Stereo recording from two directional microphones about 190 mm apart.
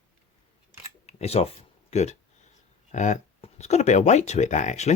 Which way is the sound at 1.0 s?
35° left (ahead or behind).